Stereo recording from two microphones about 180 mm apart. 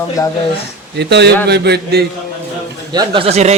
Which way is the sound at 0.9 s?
70° right (ahead or behind).